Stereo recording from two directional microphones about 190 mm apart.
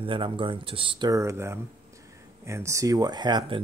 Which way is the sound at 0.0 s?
25° right (ahead or behind).